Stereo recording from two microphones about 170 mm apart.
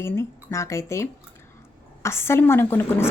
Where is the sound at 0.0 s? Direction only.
15° left (ahead or behind).